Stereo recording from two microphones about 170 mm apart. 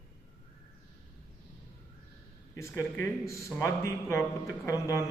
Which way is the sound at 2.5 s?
15° left (ahead or behind).